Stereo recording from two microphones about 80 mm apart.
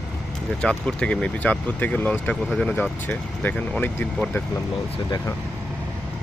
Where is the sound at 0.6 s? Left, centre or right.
Centre.